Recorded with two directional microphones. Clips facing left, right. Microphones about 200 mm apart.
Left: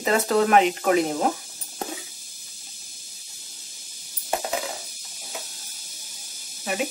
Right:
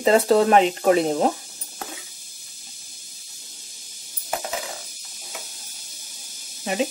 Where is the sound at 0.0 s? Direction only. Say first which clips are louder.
Right 4 dB; 30° right (ahead or behind).